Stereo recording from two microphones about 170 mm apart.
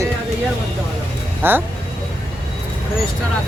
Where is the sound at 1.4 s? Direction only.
10° right (ahead or behind).